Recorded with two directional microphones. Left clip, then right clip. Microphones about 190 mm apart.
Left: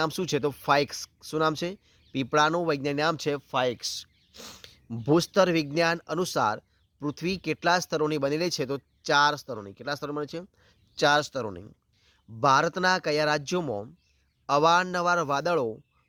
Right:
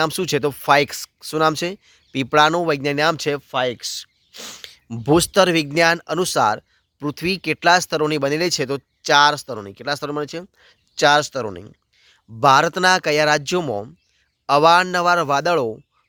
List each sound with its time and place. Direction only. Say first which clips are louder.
0.0 s speech: right 7 dB; 20° right (ahead or behind)